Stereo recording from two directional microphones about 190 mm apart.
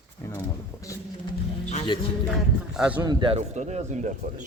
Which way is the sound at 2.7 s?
5° right (ahead or behind).